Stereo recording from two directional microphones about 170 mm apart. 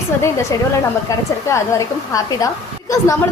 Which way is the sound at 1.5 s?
20° left (ahead or behind).